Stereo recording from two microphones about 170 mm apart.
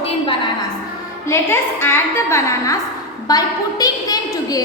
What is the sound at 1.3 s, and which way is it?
A woman's voice, 15° left (ahead or behind).